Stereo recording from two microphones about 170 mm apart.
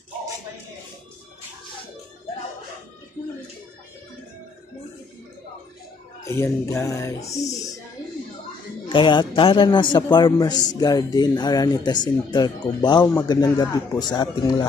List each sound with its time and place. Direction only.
6.2 s speech: 15° left (ahead or behind)
8.9 s speech: 30° left (ahead or behind)